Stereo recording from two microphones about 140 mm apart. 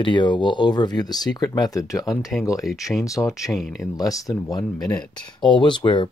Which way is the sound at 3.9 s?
25° left (ahead or behind).